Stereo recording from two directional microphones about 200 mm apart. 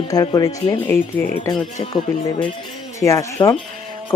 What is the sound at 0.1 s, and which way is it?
Speech, 20° left (ahead or behind).